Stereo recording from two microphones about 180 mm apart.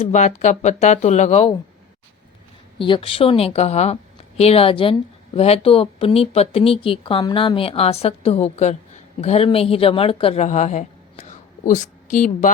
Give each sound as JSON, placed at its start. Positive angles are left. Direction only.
{"t": 0.0, "sound": "speech", "side_deg": 40}
{"t": 2.7, "sound": "speech", "side_deg": 30}